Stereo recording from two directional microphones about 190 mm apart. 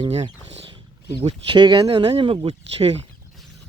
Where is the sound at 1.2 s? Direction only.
30° right (ahead or behind).